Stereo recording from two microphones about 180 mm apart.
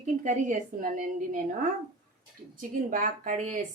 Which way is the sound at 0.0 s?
45° right (ahead or behind).